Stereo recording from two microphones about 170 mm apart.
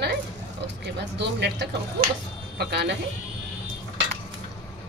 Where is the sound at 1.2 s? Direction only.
85° right.